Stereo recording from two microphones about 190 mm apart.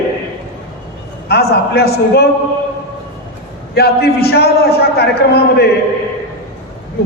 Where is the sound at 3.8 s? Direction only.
55° left (ahead or behind).